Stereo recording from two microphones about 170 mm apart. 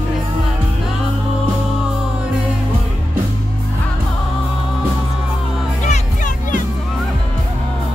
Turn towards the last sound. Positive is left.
turn(degrees=50)  # may be behind; listen again after turning